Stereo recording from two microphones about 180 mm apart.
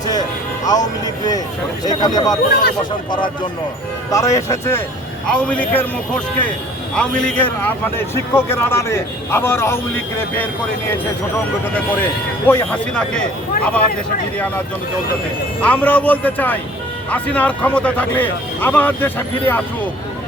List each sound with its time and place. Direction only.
0.1 s music: 20° left (ahead or behind)
1.8 s speech: 20° left (ahead or behind)
2.5 s speech: 60° left (ahead or behind)
3.1 s a man's voice: 25° left (ahead or behind); by 10.5 s 10° left (ahead or behind)
12.5 s a man's voice: 10° left (ahead or behind)
15.6 s a man's voice: 10° left (ahead or behind)